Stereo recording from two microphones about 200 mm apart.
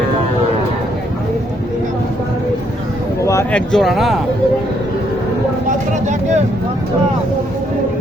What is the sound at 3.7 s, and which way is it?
Speech, centre (ahead or behind).